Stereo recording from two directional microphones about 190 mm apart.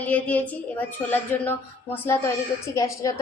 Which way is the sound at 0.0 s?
10° left (ahead or behind).